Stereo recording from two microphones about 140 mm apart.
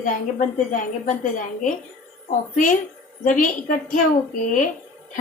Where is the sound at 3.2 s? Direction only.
70° left (ahead or behind).